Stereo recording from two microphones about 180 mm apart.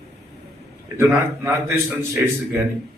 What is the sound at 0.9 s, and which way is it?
A man's voice, 15° right (ahead or behind).